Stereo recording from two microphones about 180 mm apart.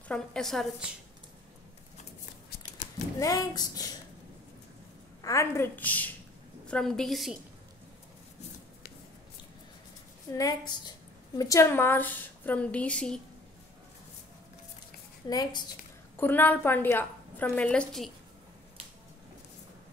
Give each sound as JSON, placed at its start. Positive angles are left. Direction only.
{"t": 0.1, "sound": "a woman's voice", "side_deg": 5}
{"t": 3.2, "sound": "speech", "side_deg": 20}
{"t": 5.2, "sound": "a woman's voice", "side_deg": 15}
{"t": 10.3, "sound": "a woman's voice", "side_deg": 20}
{"t": 15.2, "sound": "speech", "side_deg": 20}
{"t": 16.2, "sound": "a woman's voice", "side_deg": 10}